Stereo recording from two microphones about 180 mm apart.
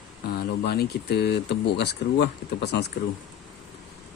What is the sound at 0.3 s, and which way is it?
Speech, 60° left (ahead or behind).